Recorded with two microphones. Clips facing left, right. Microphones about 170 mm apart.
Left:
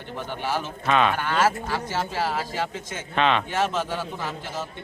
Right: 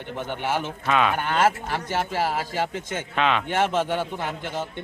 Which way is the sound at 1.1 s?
50° right (ahead or behind).